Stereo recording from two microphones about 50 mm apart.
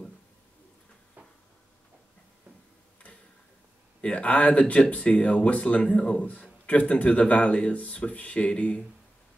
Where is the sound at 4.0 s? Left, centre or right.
Left.